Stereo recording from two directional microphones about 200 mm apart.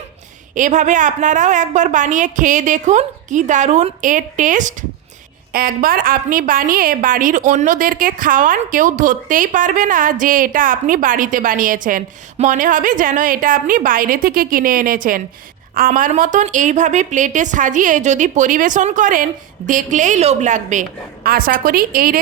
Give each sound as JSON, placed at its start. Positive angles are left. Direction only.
{"t": 0.5, "sound": "a woman's voice", "side_deg": -40}